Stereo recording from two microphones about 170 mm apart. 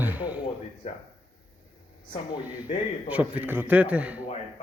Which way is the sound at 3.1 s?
10° right (ahead or behind).